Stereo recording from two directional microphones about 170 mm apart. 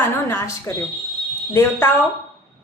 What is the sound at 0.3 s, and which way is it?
Speech, 15° left (ahead or behind).